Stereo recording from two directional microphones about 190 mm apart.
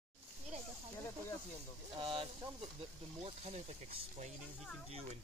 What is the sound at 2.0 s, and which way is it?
Speech, 25° right (ahead or behind).